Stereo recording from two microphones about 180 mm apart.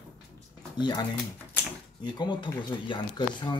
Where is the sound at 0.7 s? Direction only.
25° left (ahead or behind).